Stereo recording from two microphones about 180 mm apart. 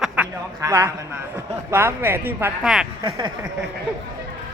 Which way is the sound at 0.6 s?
15° right (ahead or behind).